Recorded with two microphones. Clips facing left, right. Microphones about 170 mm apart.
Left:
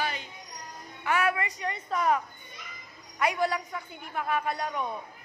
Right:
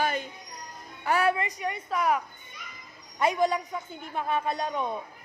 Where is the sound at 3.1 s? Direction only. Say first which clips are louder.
Right 3 dB; 25° right (ahead or behind).